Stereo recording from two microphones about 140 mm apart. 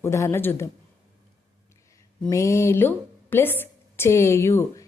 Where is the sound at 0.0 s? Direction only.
20° left (ahead or behind).